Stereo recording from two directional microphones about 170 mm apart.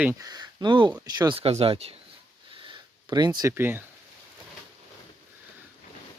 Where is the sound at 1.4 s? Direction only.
35° right (ahead or behind).